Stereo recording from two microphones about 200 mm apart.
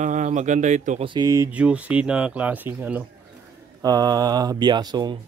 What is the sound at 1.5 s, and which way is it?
Speech, 5° right (ahead or behind).